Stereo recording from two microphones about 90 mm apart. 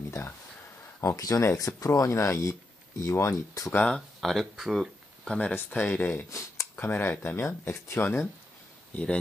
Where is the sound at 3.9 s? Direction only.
Centre (ahead or behind).